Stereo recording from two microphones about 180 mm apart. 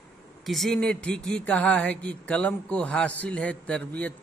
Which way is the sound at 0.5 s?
Centre (ahead or behind).